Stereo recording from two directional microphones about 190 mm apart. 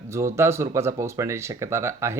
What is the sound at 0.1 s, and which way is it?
Speech, 15° right (ahead or behind).